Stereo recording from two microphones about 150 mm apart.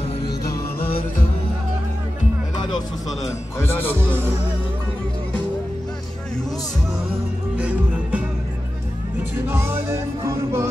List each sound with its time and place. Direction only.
3.5 s a man's voice: 15° left (ahead or behind)
7.5 s music: 10° right (ahead or behind)
9.5 s music: 15° right (ahead or behind)